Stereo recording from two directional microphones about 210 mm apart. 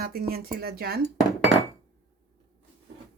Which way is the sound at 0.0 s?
45° right (ahead or behind).